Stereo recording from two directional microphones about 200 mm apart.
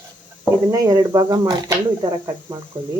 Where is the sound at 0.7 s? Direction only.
15° right (ahead or behind).